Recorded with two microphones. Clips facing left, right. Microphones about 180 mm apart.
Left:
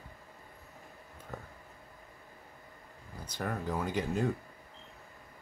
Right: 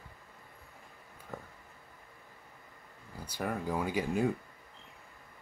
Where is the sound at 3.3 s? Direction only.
10° right (ahead or behind).